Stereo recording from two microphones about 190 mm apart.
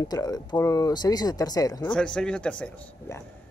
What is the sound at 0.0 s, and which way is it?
Speech, 20° left (ahead or behind).